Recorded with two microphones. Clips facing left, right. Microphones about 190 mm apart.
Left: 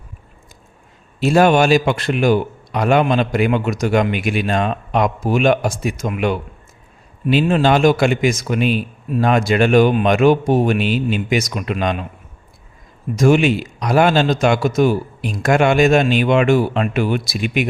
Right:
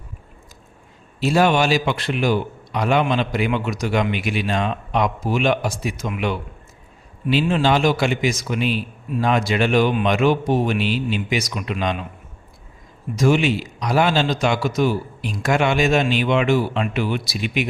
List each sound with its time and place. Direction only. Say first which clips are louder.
1.2 s a man's voice: left 4 dB; 50° left (ahead or behind)
13.1 s a man's voice: left 4 dB; 50° left (ahead or behind)